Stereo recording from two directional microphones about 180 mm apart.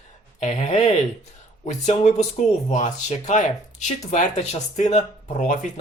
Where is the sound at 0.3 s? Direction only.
40° left (ahead or behind).